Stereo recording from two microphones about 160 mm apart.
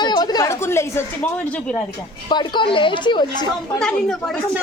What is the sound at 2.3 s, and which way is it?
A woman's voice, 30° left (ahead or behind).